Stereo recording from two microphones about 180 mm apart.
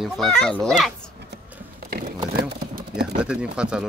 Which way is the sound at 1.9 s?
60° right (ahead or behind).